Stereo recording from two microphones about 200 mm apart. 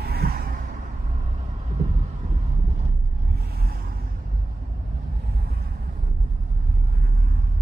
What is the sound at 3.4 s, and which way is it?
Vehicle, 50° right (ahead or behind).